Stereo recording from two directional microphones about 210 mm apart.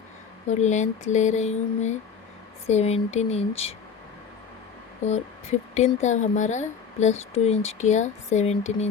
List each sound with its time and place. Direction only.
0.4 s speech: 35° left (ahead or behind)
5.0 s speech: 30° left (ahead or behind)